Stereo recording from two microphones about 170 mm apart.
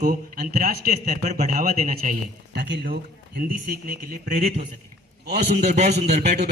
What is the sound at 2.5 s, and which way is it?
Speech, 90° right.